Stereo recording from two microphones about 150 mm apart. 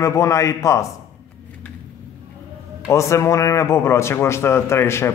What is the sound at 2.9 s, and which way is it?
A man's voice, 20° left (ahead or behind).